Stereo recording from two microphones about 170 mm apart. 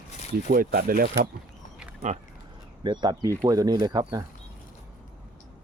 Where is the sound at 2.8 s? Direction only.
25° right (ahead or behind).